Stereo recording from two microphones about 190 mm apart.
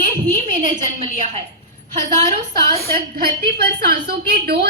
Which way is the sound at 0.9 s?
35° right (ahead or behind).